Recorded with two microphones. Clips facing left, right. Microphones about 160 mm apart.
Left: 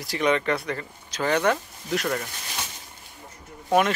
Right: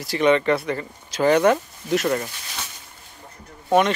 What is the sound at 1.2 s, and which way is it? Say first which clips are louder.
Speech: right 6 dB; 35° right (ahead or behind).